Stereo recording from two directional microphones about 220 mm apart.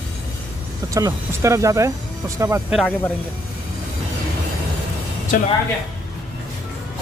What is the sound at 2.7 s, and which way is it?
Speech, 5° left (ahead or behind).